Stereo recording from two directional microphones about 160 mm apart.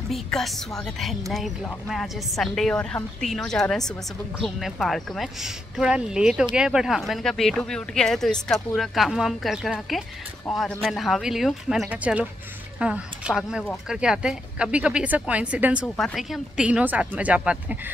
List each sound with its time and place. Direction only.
0.1 s speech: centre (ahead or behind)